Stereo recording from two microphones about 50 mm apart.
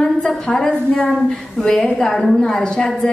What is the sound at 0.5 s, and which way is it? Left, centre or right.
A woman's voice, centre.